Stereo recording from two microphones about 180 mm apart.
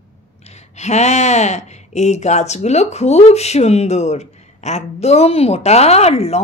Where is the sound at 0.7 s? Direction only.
40° left (ahead or behind).